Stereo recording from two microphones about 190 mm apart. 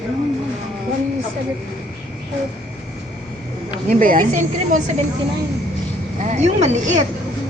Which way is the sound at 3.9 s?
45° right (ahead or behind).